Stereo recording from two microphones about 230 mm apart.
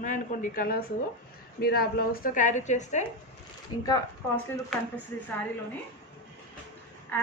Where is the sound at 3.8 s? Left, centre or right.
Centre.